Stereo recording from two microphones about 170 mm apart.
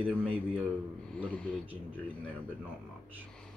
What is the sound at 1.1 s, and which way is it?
Speech, 5° left (ahead or behind).